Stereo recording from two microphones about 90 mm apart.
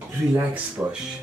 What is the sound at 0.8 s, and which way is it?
Speech, 20° right (ahead or behind).